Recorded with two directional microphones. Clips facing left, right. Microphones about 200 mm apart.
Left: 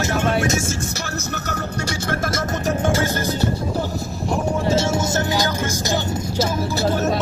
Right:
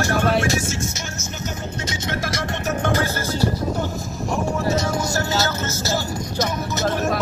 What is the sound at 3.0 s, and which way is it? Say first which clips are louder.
Speech: left 1 dB; 15° left (ahead or behind).